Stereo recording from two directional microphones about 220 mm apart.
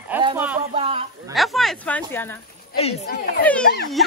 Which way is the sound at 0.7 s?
25° right (ahead or behind).